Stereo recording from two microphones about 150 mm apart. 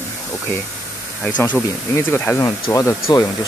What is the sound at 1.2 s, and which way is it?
Speech, 10° left (ahead or behind).